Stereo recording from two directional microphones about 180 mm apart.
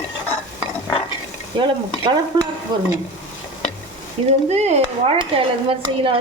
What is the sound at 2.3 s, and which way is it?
Speech, 25° right (ahead or behind).